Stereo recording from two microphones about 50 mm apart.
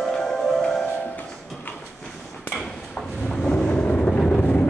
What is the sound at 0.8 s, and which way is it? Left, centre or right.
Music, left.